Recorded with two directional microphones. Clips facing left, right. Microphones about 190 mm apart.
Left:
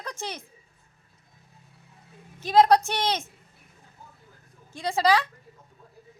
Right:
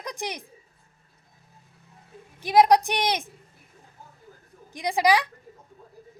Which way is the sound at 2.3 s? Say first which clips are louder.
Right 1 dB; 15° right (ahead or behind).